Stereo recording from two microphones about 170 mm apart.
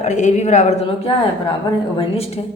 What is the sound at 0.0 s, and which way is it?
A woman's voice, 45° left (ahead or behind).